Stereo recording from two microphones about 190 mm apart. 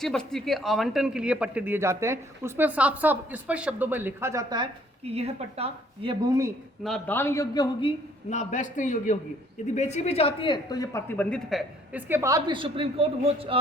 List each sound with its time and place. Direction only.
0.0 s speech: 5° left (ahead or behind); by 6.5 s 20° right (ahead or behind)
6.8 s a man's voice: 5° left (ahead or behind)
11.2 s speech: 5° left (ahead or behind)
12.0 s a man's voice: 15° right (ahead or behind); by 13.6 s 30° right (ahead or behind)